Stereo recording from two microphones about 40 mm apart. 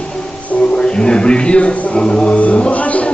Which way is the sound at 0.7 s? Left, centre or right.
Left.